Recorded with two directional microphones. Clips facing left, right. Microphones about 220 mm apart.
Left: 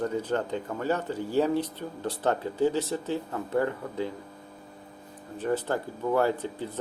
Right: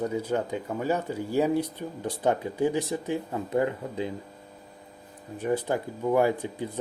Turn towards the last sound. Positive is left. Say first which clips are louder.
# right 1 dB
turn(degrees=-15)  # may be behind; listen again after turning